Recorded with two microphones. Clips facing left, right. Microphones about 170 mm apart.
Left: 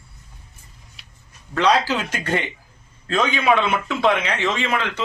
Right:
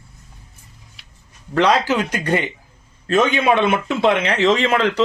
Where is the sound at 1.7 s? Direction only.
20° right (ahead or behind).